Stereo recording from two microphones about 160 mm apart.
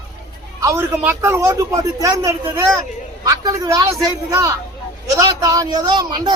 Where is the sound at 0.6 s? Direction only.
15° right (ahead or behind).